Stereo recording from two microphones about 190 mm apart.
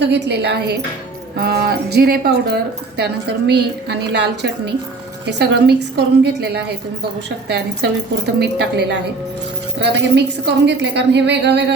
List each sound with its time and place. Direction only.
0.0 s a woman's voice: 65° right (ahead or behind)